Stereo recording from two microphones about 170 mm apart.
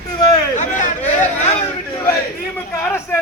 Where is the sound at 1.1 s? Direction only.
45° left (ahead or behind).